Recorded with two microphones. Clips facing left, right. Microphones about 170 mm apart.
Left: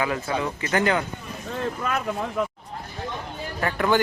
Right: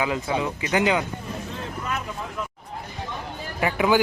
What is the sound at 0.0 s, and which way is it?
A man's voice, 15° right (ahead or behind).